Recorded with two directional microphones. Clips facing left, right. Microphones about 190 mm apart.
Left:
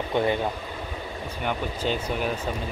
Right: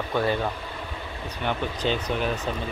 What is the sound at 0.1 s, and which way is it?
Speech, 20° left (ahead or behind).